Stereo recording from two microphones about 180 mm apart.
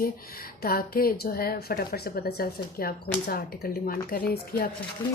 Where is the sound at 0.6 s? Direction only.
55° left (ahead or behind).